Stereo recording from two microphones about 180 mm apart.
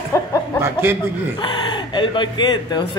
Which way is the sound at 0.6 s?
15° right (ahead or behind).